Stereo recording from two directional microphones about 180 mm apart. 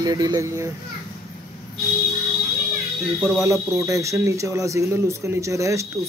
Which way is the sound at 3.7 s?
15° right (ahead or behind).